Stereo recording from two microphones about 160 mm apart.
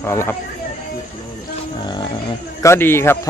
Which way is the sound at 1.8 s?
25° left (ahead or behind).